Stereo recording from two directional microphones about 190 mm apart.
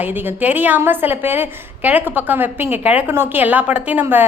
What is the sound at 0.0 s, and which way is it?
A woman's voice, 10° right (ahead or behind).